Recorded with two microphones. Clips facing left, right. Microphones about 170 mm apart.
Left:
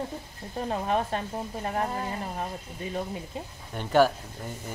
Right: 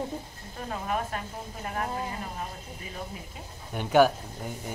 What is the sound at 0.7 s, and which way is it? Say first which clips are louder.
Speech: left 4 dB; 30° left (ahead or behind).